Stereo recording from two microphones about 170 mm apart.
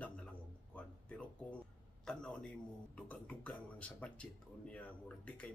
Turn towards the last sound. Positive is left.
turn(degrees=10)  # may be behind; listen again after turning